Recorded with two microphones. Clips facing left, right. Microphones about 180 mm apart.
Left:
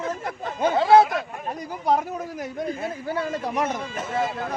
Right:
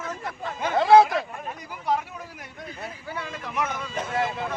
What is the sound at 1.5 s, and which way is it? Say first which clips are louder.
Speech: left 6 dB; 40° left (ahead or behind).